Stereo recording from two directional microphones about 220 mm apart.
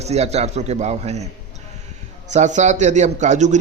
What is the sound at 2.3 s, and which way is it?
Speech, 30° right (ahead or behind).